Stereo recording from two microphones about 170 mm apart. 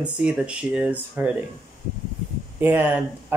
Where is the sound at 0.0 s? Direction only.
5° right (ahead or behind).